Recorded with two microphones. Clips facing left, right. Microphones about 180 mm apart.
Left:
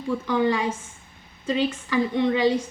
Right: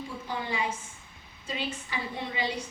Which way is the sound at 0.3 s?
90° left.